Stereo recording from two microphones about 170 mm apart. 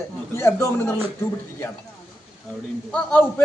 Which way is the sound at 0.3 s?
15° left (ahead or behind).